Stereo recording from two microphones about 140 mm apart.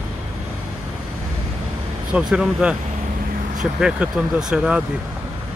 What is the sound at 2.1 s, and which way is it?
Speech, 5° right (ahead or behind).